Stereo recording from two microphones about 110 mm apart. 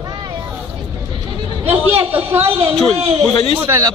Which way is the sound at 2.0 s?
20° right (ahead or behind).